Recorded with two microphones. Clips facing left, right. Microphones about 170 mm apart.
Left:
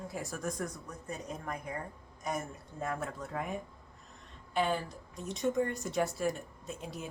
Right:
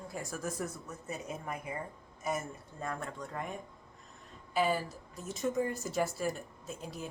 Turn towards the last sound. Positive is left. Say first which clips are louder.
# even
turn(degrees=0)  # may be behind; listen again after turning